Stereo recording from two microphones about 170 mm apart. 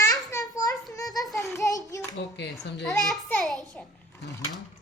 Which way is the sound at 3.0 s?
Centre (ahead or behind).